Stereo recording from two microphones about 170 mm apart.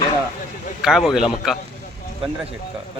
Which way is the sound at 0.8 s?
Centre (ahead or behind).